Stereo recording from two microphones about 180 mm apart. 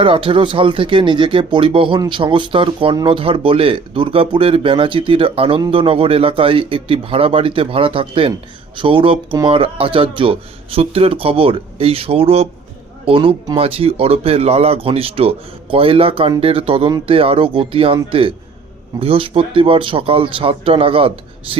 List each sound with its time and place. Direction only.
0.0 s speech: 30° right (ahead or behind)